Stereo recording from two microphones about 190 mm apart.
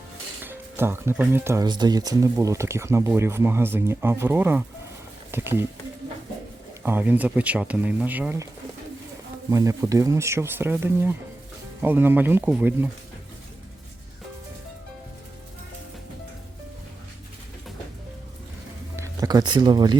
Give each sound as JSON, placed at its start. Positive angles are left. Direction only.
{"t": 0.4, "sound": "speech", "side_deg": -10}
{"t": 6.8, "sound": "speech", "side_deg": -10}
{"t": 9.5, "sound": "speech", "side_deg": -15}
{"t": 18.9, "sound": "speech", "side_deg": -15}